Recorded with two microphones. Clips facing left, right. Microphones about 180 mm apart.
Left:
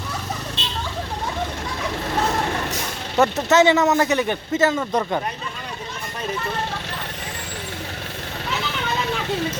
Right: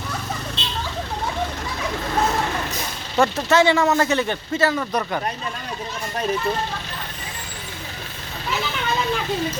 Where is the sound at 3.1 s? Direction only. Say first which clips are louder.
Left 1 dB; 20° left (ahead or behind).